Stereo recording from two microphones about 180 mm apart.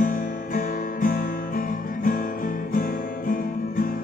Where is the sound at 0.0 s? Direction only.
50° left (ahead or behind).